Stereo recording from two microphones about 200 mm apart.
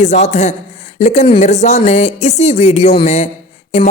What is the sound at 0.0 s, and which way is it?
A woman's voice, 35° left (ahead or behind).